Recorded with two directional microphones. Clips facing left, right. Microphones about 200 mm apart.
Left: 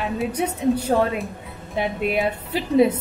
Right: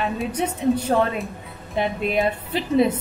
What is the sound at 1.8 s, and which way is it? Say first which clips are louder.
A woman's voice: even; 10° left (ahead or behind).